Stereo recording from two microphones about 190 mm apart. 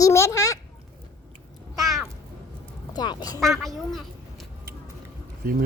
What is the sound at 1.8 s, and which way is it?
Cat, centre (ahead or behind).